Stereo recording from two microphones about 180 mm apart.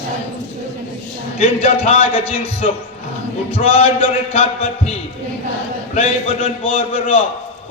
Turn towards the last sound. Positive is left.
turn(degrees=30)  # may be behind; listen again after turning